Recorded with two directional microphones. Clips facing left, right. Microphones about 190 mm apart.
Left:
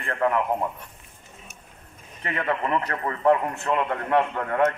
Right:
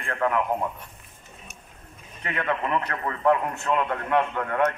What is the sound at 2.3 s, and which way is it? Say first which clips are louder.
A man's voice: left 1 dB; 35° left (ahead or behind).